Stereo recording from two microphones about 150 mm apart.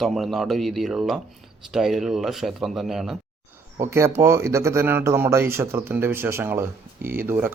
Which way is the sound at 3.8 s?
20° right (ahead or behind).